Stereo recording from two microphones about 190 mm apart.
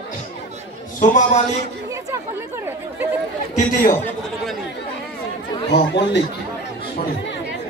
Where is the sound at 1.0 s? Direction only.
40° left (ahead or behind).